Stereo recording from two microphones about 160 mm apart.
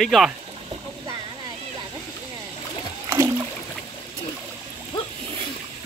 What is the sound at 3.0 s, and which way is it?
Splash, 15° right (ahead or behind).